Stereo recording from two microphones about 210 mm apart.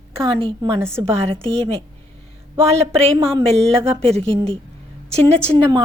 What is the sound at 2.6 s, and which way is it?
A woman's voice, 30° right (ahead or behind).